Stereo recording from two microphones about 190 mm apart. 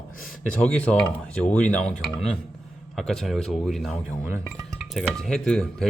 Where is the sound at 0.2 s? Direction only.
5° left (ahead or behind).